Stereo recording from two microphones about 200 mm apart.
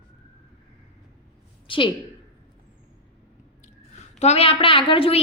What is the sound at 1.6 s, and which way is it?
Speech, 25° left (ahead or behind).